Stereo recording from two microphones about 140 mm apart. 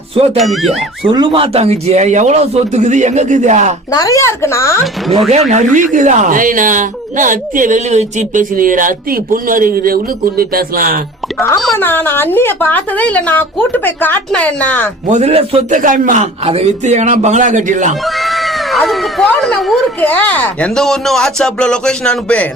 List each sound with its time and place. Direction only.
0.3 s speech: centre (ahead or behind)
1.1 s a man's voice: 35° right (ahead or behind); by 3.8 s 60° right (ahead or behind)
3.9 s speech: 25° left (ahead or behind)
5.3 s speech: 55° right (ahead or behind); by 11.0 s 90° right
11.3 s speech: 20° left (ahead or behind)
15.1 s speech: 50° right (ahead or behind)
15.8 s a man's voice: 65° right (ahead or behind)
18.0 s speech: centre (ahead or behind)